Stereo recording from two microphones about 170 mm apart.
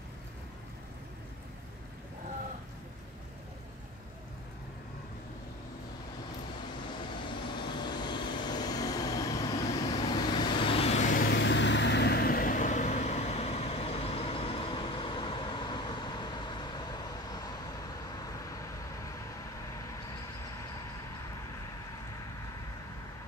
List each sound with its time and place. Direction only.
7.2 s vehicle: 25° left (ahead or behind); by 11.3 s 50° left (ahead or behind)
11.3 s vehicle: 90° left; by 17.4 s 25° left (ahead or behind)